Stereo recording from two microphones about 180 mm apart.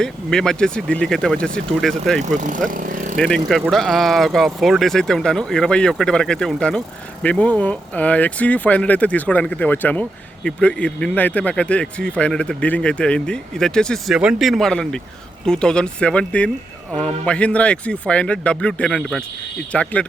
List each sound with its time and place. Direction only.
0.0 s speech: 5° left (ahead or behind)
2.2 s speech: 45° right (ahead or behind)
3.2 s speech: 5° left (ahead or behind)